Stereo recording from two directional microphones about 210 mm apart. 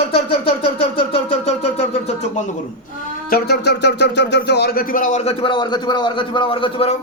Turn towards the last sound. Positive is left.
turn(degrees=25)  # may be behind; listen again after turning